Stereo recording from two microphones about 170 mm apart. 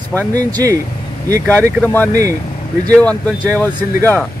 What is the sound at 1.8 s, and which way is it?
Speech, 10° left (ahead or behind).